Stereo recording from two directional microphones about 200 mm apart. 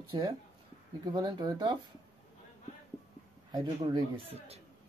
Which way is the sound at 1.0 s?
20° right (ahead or behind).